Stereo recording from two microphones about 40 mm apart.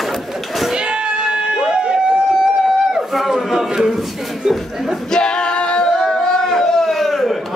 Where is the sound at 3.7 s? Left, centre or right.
Centre.